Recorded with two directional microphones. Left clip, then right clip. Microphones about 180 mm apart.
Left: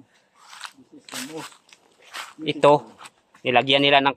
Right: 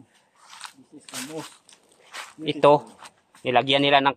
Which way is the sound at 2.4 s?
5° right (ahead or behind).